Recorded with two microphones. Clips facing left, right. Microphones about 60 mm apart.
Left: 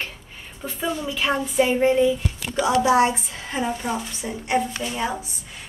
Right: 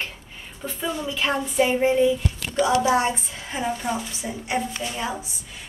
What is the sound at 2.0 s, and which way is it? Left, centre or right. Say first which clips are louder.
Speech: even; centre.